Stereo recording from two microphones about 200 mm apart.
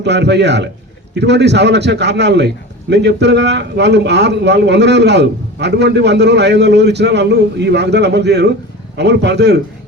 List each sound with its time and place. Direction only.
0.0 s a man's voice: 60° right (ahead or behind)